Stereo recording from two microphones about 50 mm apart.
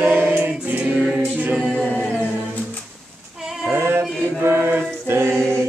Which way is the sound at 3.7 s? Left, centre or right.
Right.